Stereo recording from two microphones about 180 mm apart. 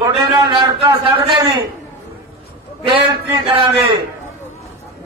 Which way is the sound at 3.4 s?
30° right (ahead or behind).